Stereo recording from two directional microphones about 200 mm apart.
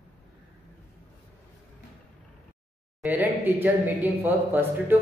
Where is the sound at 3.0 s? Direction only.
10° right (ahead or behind).